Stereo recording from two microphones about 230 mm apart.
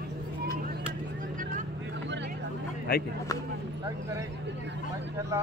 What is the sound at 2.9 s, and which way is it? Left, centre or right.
Speech, left.